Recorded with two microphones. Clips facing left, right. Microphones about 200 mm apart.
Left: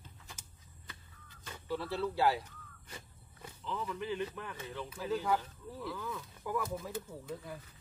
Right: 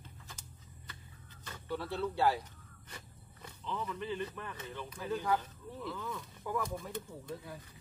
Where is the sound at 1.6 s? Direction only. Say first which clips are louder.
Left 1 dB; centre (ahead or behind).